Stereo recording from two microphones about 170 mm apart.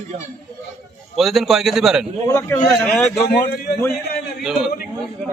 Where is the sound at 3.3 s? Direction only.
60° left (ahead or behind).